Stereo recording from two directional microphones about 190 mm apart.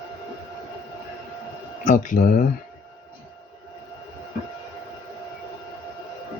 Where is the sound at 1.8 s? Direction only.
40° left (ahead or behind).